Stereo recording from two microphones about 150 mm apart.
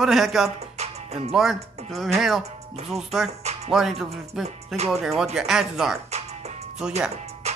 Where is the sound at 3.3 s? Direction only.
45° right (ahead or behind).